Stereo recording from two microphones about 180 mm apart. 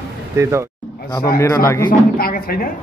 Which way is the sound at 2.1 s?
55° left (ahead or behind).